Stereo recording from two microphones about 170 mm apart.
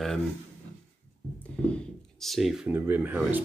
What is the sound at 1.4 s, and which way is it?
Speech, 5° left (ahead or behind).